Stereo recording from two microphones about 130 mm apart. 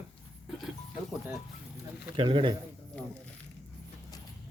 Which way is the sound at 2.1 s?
40° right (ahead or behind).